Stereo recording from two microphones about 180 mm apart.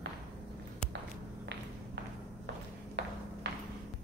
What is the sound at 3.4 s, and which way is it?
Music, 70° right (ahead or behind).